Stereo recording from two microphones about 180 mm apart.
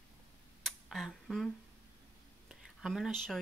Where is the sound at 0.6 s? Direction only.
Centre (ahead or behind).